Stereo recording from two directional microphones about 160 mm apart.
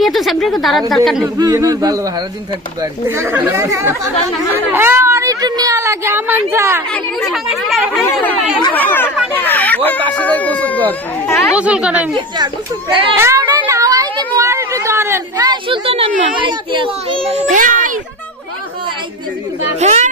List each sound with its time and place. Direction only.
0.0 s a woman's voice: centre (ahead or behind)
1.4 s speech: 25° right (ahead or behind)
3.2 s speech: 15° right (ahead or behind)
6.9 s speech: centre (ahead or behind)
8.0 s speech: 10° left (ahead or behind)
11.5 s speech: 5° right (ahead or behind)
13.1 s speech: 20° right (ahead or behind)
15.9 s a child's voice: 35° right (ahead or behind)
17.5 s a child's voice: 55° right (ahead or behind)
19.8 s speech: 45° right (ahead or behind)